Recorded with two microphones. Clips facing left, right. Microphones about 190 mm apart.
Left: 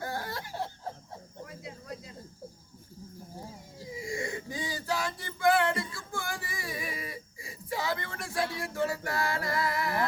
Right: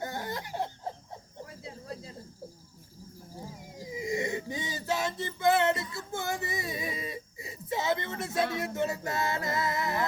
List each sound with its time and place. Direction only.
0.0 s laughter: 20° right (ahead or behind)
1.6 s a sound: 30° right (ahead or behind)
3.8 s male singing: 20° right (ahead or behind)
5.9 s music: 20° right (ahead or behind)